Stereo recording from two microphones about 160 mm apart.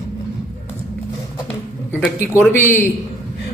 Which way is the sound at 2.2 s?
15° left (ahead or behind).